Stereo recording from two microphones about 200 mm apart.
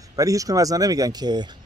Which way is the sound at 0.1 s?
15° right (ahead or behind).